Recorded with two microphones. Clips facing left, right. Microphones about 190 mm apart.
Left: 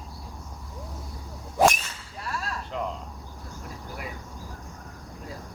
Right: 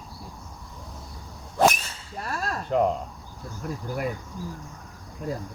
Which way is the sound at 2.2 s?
45° right (ahead or behind).